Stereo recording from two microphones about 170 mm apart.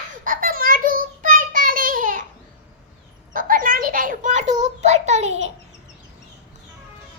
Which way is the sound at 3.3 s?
55° right (ahead or behind).